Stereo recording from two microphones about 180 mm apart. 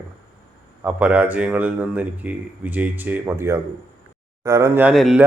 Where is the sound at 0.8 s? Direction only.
10° right (ahead or behind).